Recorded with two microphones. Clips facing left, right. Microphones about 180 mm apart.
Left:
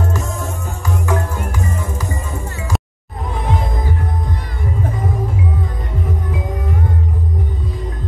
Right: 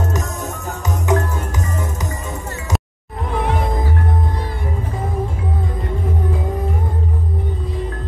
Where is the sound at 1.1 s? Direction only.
20° right (ahead or behind).